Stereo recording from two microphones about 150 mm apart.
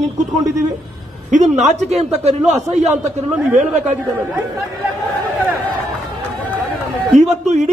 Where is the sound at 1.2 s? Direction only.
50° right (ahead or behind).